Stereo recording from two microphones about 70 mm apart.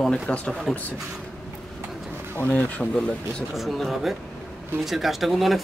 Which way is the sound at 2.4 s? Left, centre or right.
Centre.